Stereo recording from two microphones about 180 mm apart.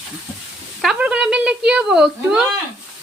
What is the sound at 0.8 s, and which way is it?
A woman's voice, 5° right (ahead or behind).